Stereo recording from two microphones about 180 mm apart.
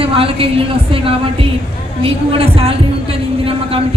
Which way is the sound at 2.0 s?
30° right (ahead or behind).